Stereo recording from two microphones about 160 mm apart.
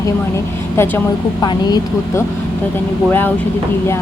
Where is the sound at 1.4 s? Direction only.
25° left (ahead or behind).